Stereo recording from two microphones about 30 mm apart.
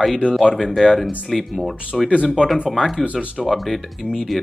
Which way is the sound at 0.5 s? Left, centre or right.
Centre.